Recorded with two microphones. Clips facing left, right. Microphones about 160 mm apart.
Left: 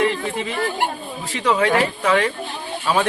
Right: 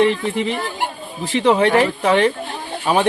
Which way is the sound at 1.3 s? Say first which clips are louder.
Right 4 dB; 25° right (ahead or behind).